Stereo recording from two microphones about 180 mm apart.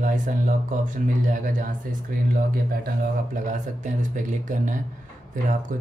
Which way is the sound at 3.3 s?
45° right (ahead or behind).